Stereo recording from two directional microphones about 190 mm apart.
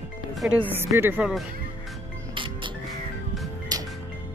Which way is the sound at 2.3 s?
25° right (ahead or behind).